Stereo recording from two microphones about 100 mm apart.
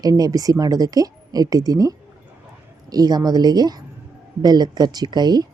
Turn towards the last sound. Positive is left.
turn(degrees=-45)  # may be behind; listen again after turning